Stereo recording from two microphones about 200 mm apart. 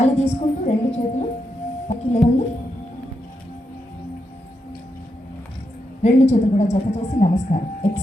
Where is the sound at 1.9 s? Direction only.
35° left (ahead or behind).